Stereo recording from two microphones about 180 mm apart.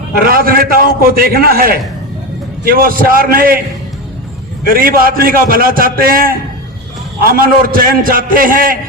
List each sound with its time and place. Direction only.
0.3 s a man's voice: 55° right (ahead or behind)
4.7 s a man's voice: 55° right (ahead or behind)
7.4 s a man's voice: 50° right (ahead or behind)